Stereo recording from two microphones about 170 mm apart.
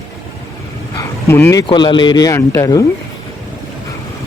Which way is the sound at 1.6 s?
25° left (ahead or behind).